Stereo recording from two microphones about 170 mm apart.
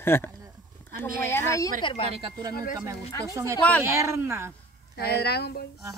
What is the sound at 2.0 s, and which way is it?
Speech, 35° right (ahead or behind).